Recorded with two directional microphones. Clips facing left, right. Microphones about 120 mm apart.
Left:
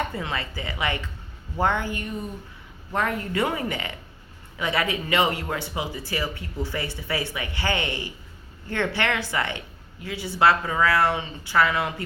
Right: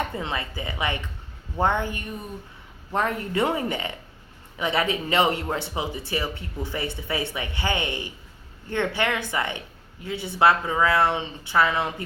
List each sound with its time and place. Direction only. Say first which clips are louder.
0.2 s speech: even; 20° right (ahead or behind)